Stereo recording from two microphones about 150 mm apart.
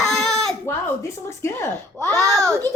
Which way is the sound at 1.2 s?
20° left (ahead or behind).